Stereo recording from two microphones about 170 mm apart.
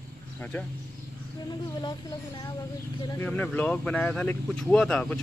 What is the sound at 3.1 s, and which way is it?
Speech, 10° left (ahead or behind).